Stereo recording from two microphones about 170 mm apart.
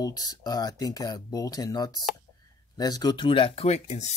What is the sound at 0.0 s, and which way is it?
Speech, 20° left (ahead or behind).